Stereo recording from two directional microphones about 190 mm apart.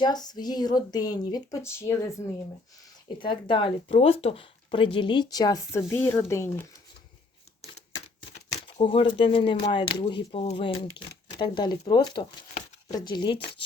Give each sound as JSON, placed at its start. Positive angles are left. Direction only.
{"t": 0.0, "sound": "speech", "side_deg": 20}
{"t": 3.2, "sound": "speech", "side_deg": 25}
{"t": 8.6, "sound": "speech", "side_deg": 30}